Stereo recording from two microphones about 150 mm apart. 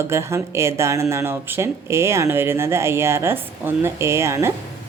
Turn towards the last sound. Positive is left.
turn(degrees=-20)  # may be behind; listen again after turning